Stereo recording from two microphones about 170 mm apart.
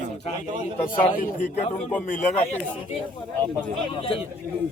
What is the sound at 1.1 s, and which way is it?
Speech, 50° left (ahead or behind).